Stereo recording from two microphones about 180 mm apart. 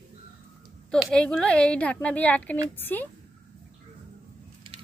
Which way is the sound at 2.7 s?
10° left (ahead or behind).